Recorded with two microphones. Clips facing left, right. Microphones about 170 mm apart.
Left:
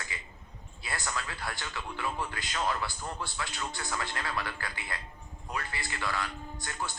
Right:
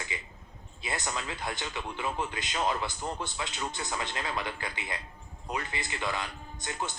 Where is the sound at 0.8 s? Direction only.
20° right (ahead or behind).